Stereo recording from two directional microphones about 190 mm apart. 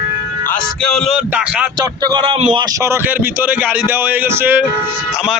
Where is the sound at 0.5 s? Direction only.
5° left (ahead or behind).